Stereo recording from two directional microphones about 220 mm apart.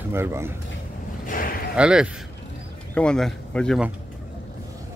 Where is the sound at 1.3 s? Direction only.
40° left (ahead or behind).